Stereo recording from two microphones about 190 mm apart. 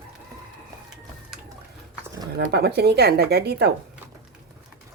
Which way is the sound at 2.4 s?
60° right (ahead or behind).